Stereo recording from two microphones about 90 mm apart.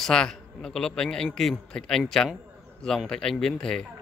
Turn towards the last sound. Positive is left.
turn(degrees=5)  # may be behind; listen again after turning